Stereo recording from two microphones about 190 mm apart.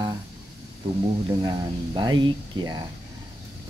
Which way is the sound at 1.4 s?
20° right (ahead or behind).